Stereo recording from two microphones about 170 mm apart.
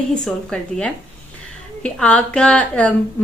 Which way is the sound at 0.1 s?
5° left (ahead or behind).